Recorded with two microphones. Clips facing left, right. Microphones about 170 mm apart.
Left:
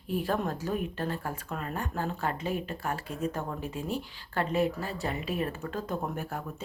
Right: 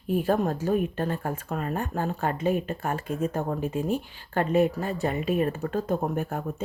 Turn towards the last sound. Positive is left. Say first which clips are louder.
# right 6 dB
turn(degrees=-45)  # may be behind; listen again after turning